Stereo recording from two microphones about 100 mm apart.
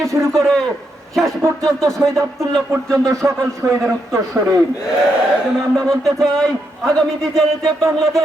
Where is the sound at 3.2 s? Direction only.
25° right (ahead or behind).